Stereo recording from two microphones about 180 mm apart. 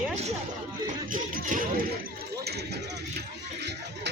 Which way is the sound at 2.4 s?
65° right (ahead or behind).